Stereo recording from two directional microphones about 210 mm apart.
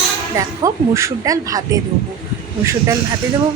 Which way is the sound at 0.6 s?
15° right (ahead or behind).